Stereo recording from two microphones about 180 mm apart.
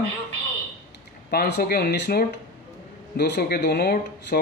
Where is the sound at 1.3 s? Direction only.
65° left (ahead or behind).